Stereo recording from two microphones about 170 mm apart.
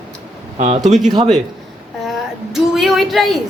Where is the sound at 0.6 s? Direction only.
45° right (ahead or behind).